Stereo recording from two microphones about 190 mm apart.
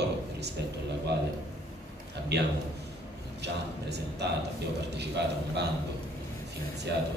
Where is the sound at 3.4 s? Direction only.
60° right (ahead or behind).